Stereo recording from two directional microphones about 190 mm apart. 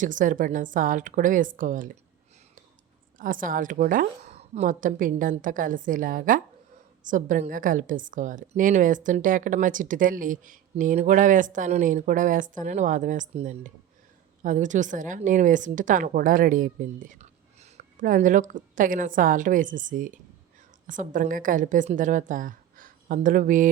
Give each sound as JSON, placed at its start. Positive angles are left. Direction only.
{"t": 0.0, "sound": "a woman's voice", "side_deg": -45}
{"t": 3.2, "sound": "a woman's voice", "side_deg": -45}